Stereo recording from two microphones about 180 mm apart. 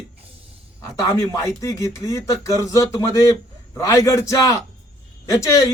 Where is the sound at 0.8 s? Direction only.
15° left (ahead or behind).